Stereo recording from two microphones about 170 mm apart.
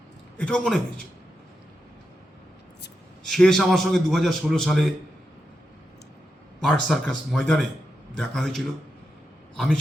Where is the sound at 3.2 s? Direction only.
Centre (ahead or behind).